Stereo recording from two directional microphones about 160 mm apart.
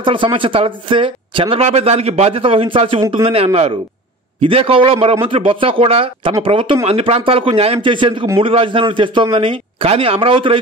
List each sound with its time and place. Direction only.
0.0 s speech: 30° right (ahead or behind)